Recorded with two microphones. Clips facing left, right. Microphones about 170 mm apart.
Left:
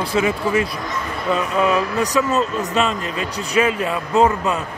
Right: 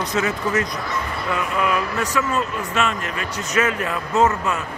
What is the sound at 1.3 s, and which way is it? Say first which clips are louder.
Speech: left 4 dB; 25° left (ahead or behind).